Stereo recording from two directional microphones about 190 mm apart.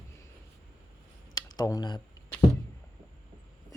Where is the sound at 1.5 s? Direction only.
20° left (ahead or behind).